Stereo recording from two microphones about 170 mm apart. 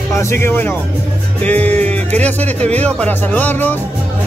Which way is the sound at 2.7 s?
10° left (ahead or behind).